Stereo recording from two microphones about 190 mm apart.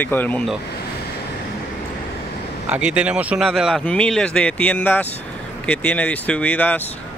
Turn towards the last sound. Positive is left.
turn(degrees=5)  # may be behind; listen again after turning